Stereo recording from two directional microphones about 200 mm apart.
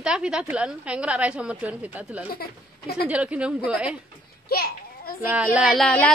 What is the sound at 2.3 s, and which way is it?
Speech, 50° left (ahead or behind).